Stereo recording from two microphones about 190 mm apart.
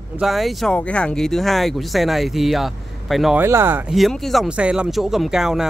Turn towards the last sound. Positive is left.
turn(degrees=0)  # may be behind; listen again after turning